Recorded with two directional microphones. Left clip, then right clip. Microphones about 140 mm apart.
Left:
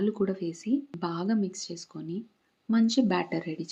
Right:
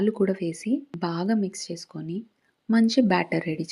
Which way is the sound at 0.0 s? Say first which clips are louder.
Right 5 dB; 25° right (ahead or behind).